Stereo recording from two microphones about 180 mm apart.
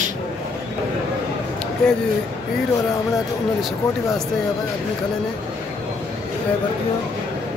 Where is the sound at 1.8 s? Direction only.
5° left (ahead or behind).